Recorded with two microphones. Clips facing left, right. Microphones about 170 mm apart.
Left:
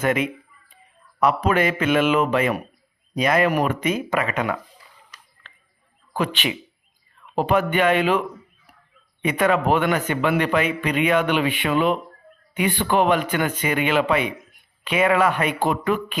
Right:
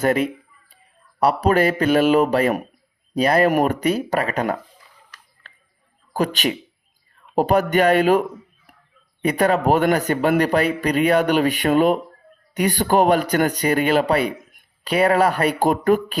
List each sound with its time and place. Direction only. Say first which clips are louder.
0.0 s speech: right 3 dB; 40° right (ahead or behind)
5.5 s a sound: right 1 dB; 40° right (ahead or behind)
6.1 s speech: right 3 dB; 40° right (ahead or behind)